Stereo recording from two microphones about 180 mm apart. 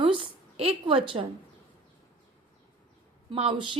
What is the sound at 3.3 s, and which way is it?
Speech, 30° right (ahead or behind).